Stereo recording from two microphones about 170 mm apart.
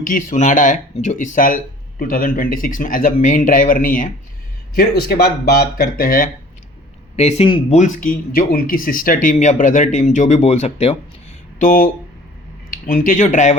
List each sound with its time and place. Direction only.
0.0 s speech: 50° left (ahead or behind)
4.7 s speech: 65° left (ahead or behind)
7.2 s a man's voice: 40° left (ahead or behind)
7.8 s speech: 50° left (ahead or behind)
11.6 s speech: 50° left (ahead or behind)
12.9 s speech: 50° left (ahead or behind)